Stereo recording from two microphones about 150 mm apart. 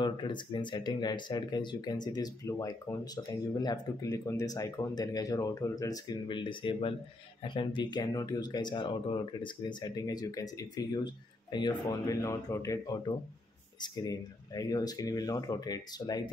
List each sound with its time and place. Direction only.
0.0 s speech: 30° left (ahead or behind)